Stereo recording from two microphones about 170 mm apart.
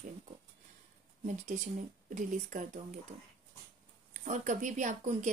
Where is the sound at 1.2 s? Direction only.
45° right (ahead or behind).